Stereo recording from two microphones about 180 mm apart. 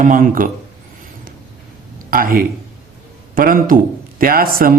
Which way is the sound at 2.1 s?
55° right (ahead or behind).